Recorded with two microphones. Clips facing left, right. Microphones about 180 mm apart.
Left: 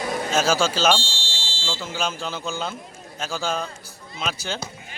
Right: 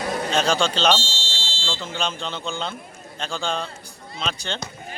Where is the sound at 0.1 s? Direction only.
5° left (ahead or behind).